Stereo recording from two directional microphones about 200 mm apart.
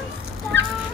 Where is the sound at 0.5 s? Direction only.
60° right (ahead or behind).